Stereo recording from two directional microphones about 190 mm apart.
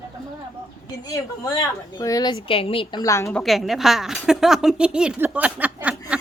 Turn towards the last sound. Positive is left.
turn(degrees=-10)  # may be behind; listen again after turning